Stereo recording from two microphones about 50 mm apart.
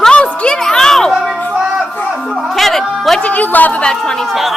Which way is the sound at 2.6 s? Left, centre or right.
Centre.